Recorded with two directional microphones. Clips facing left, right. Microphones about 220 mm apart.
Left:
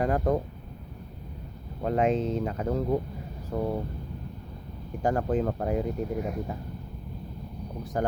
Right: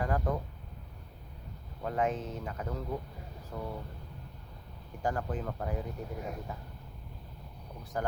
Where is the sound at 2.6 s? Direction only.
40° left (ahead or behind).